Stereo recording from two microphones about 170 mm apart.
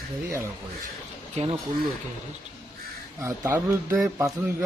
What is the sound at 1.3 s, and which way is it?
Speech, 35° right (ahead or behind).